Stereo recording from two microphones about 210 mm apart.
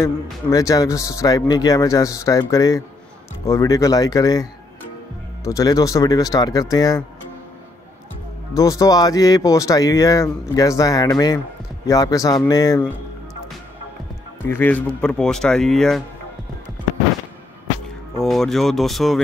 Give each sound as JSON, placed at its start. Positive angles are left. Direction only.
{"t": 0.0, "sound": "speech", "side_deg": 15}
{"t": 8.5, "sound": "speech", "side_deg": 15}
{"t": 14.5, "sound": "speech", "side_deg": 10}
{"t": 18.2, "sound": "speech", "side_deg": 0}